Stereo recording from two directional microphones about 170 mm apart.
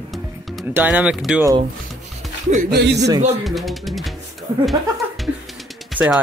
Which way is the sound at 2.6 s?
80° right.